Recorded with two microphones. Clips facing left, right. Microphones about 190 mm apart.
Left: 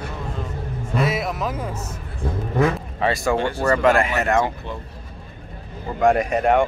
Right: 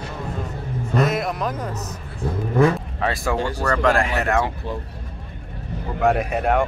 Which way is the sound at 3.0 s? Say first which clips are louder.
Left 2 dB; centre (ahead or behind).